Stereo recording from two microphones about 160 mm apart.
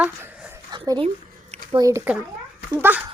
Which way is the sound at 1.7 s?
20° right (ahead or behind).